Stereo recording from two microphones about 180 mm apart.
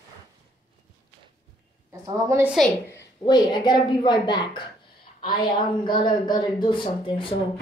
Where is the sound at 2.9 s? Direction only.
20° left (ahead or behind).